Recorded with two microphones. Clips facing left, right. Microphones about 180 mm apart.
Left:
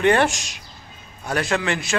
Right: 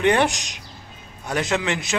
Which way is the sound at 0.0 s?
15° right (ahead or behind).